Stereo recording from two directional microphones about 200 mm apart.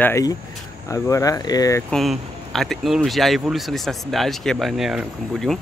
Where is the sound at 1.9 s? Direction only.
Centre (ahead or behind).